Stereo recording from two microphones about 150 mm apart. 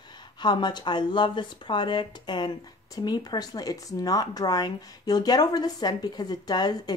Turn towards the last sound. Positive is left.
turn(degrees=25)  # may be behind; listen again after turning